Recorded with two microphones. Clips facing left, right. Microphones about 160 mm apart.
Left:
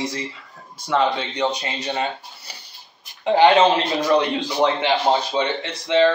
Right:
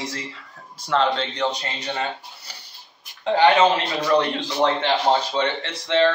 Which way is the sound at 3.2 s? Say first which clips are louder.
Left 2 dB; 20° left (ahead or behind).